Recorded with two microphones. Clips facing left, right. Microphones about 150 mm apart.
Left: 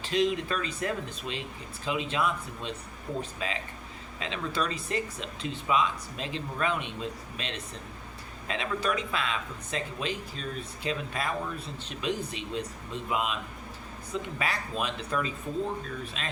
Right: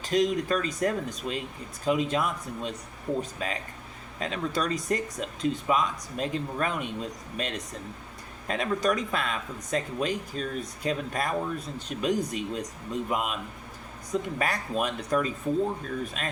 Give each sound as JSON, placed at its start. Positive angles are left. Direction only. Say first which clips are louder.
{"t": 0.0, "sound": "speech", "louder": "right 2 dB", "side_deg": -45}